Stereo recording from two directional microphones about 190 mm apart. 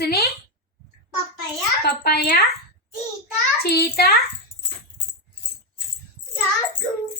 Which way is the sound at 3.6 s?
55° left (ahead or behind).